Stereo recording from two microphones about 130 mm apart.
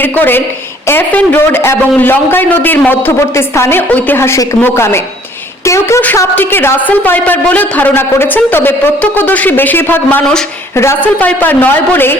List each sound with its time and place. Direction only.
0.0 s a woman's voice: 15° left (ahead or behind)